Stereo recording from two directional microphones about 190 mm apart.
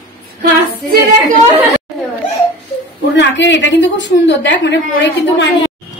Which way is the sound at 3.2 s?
70° left (ahead or behind).